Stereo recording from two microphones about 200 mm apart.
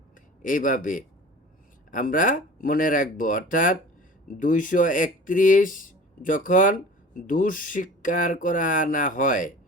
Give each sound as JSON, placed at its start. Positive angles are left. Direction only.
{"t": 0.4, "sound": "speech", "side_deg": 40}